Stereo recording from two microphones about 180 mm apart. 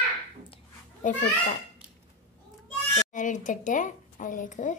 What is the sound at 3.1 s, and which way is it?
Speech, 45° left (ahead or behind).